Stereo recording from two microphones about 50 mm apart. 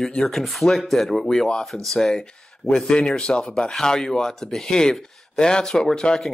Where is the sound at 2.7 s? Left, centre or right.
Centre.